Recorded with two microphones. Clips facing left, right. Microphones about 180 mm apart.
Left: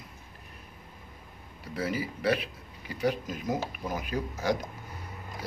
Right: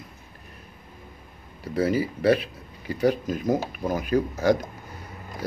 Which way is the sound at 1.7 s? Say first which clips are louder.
Right 8 dB; 40° right (ahead or behind).